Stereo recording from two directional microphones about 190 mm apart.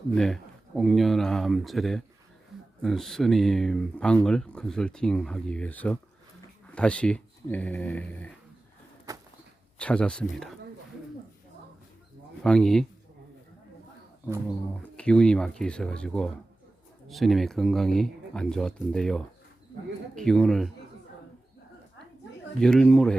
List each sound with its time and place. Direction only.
0.1 s speech: centre (ahead or behind)
9.1 s a sound: 20° right (ahead or behind)
9.7 s speech: 5° left (ahead or behind)
12.4 s speech: 5° left (ahead or behind)
14.4 s speech: 5° left (ahead or behind)
22.6 s speech: 5° left (ahead or behind)